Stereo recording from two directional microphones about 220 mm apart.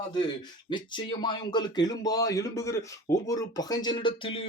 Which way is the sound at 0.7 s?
20° left (ahead or behind).